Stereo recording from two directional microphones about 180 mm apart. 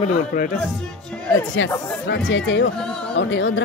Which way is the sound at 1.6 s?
90° left.